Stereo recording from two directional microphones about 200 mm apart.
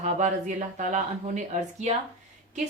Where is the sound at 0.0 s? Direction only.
40° right (ahead or behind).